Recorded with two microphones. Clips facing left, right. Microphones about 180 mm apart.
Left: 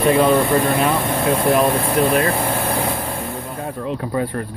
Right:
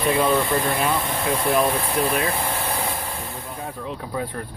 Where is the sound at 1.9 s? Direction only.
60° left (ahead or behind).